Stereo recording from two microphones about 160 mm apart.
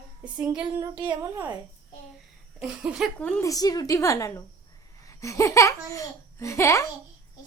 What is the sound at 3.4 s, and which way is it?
Speech, 20° left (ahead or behind).